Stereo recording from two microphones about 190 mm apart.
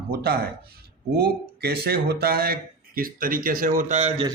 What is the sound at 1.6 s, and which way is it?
Speech, 55° right (ahead or behind).